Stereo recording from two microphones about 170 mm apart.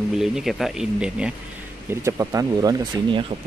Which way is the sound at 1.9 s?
15° right (ahead or behind).